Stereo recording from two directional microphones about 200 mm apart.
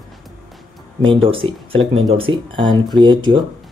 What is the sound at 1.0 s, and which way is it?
Speech, 25° right (ahead or behind).